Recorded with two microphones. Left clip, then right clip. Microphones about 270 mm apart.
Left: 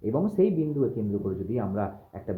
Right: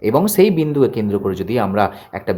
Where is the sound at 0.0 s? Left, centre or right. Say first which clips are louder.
Right 11 dB; right.